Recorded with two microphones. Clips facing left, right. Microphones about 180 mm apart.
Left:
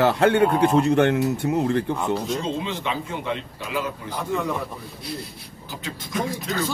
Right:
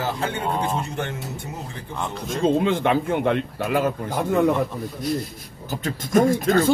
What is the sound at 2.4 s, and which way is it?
Speech, 55° right (ahead or behind).